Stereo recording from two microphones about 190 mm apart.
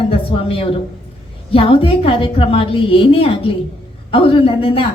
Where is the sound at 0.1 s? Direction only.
30° left (ahead or behind).